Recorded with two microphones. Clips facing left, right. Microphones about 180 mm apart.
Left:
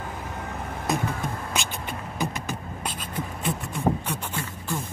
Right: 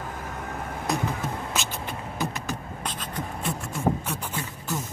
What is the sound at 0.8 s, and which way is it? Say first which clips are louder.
Music: left 1 dB; centre (ahead or behind).